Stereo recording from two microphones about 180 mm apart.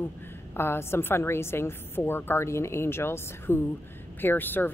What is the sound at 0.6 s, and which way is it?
A woman's voice, 15° left (ahead or behind).